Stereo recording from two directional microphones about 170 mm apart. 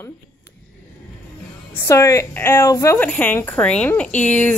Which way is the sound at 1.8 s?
20° left (ahead or behind).